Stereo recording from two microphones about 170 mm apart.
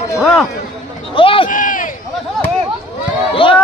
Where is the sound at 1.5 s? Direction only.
50° left (ahead or behind).